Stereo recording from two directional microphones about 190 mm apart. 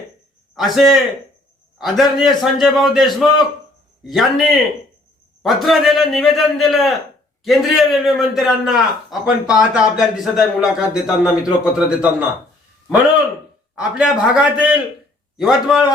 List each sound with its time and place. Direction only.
0.5 s a man's voice: centre (ahead or behind)
13.7 s a man's voice: 5° right (ahead or behind)